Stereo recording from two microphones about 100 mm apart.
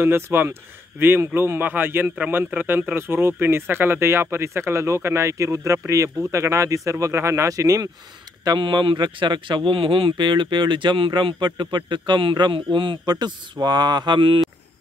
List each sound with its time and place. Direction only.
0.0 s speech: 20° right (ahead or behind)
8.5 s speech: 50° right (ahead or behind)
9.7 s speech: 65° right (ahead or behind)